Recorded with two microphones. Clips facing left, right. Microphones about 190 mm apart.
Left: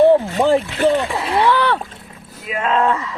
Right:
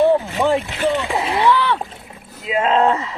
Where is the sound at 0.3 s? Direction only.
35° left (ahead or behind).